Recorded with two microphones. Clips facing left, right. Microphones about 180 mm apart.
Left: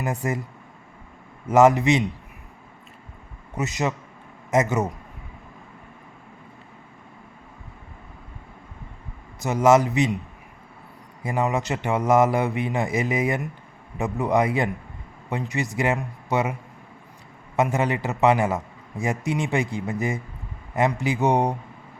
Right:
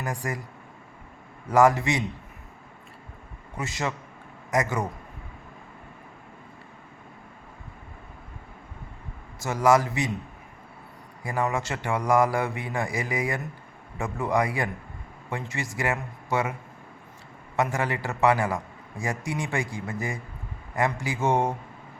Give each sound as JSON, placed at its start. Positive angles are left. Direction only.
{"t": 0.0, "sound": "a man's voice", "side_deg": 25}
{"t": 1.5, "sound": "a man's voice", "side_deg": 20}
{"t": 3.5, "sound": "a man's voice", "side_deg": 20}
{"t": 9.4, "sound": "a man's voice", "side_deg": 20}
{"t": 11.2, "sound": "a man's voice", "side_deg": 20}
{"t": 17.6, "sound": "a man's voice", "side_deg": 20}